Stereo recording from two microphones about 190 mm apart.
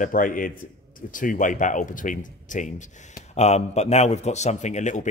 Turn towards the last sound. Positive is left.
turn(degrees=40)  # may be behind; listen again after turning